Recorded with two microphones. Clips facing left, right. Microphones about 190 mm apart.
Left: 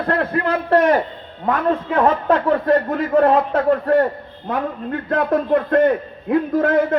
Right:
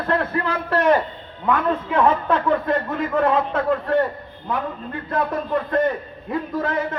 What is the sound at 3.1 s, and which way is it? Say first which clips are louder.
Speech: left 5 dB; 40° left (ahead or behind).